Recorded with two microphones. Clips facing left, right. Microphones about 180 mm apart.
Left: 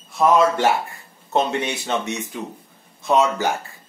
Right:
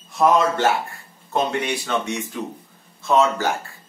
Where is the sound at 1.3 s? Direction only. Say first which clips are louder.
Left 1 dB; 25° left (ahead or behind).